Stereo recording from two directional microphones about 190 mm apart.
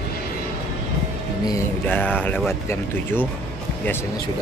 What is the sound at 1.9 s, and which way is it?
Speech, 10° left (ahead or behind).